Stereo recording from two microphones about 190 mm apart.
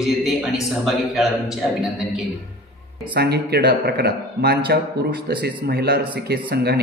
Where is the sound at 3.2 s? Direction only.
60° right (ahead or behind).